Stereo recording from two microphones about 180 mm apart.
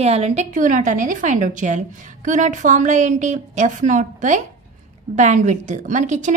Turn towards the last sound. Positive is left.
turn(degrees=-40)  # may be behind; listen again after turning